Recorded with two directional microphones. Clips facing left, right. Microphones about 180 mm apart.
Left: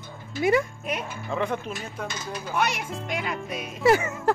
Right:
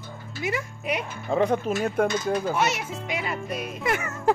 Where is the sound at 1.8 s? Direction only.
55° right (ahead or behind).